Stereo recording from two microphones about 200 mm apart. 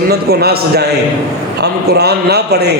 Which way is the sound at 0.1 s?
50° right (ahead or behind).